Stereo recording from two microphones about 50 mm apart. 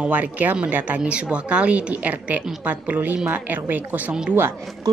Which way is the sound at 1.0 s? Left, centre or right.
Right.